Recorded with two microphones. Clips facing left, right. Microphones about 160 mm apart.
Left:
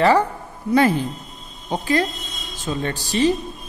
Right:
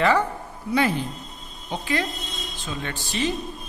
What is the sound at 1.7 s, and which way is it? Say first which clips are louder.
A woman's voice: left 6 dB; 40° left (ahead or behind).